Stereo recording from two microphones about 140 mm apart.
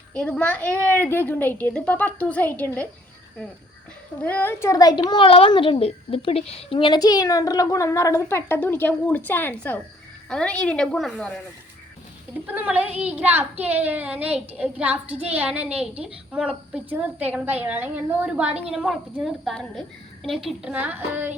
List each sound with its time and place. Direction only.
0.1 s a woman's voice: 10° left (ahead or behind)
4.2 s a child's voice: 10° left (ahead or behind)
12.5 s a woman's voice: 10° right (ahead or behind)